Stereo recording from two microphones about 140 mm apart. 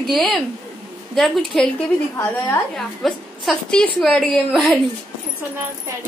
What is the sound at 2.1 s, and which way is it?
Speech, 15° left (ahead or behind).